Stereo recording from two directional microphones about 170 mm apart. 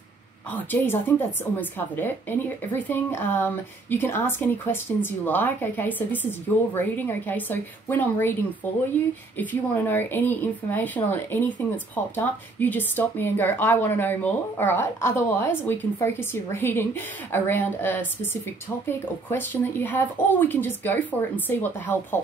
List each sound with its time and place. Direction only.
0.5 s speech: 10° left (ahead or behind)
9.4 s speech: 10° left (ahead or behind)